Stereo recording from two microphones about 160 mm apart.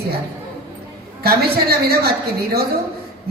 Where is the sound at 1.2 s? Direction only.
70° right (ahead or behind).